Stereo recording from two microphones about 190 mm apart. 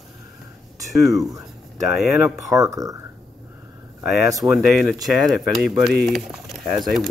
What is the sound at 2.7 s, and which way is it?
Speech, 20° right (ahead or behind).